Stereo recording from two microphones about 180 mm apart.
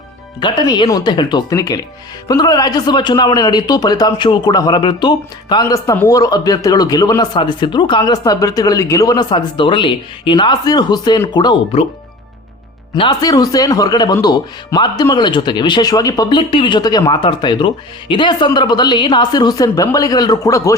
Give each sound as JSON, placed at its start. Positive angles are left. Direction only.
{"t": 0.3, "sound": "speech", "side_deg": 25}
{"t": 13.0, "sound": "speech", "side_deg": 25}